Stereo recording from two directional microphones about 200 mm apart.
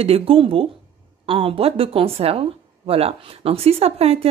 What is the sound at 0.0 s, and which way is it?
A woman's voice, 30° right (ahead or behind).